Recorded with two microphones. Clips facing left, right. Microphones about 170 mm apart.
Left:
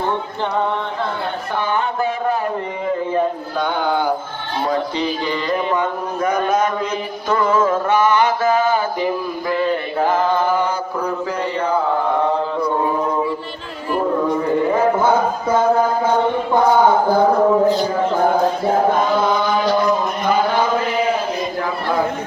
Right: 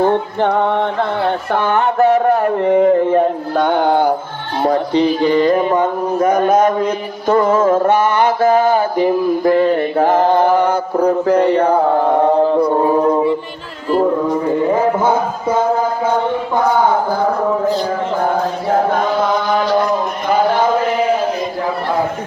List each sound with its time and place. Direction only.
0.1 s music: 60° right (ahead or behind)
1.5 s a sound: 70° right (ahead or behind)
4.6 s mantra: 55° right (ahead or behind)
13.0 s a capella: 30° right (ahead or behind)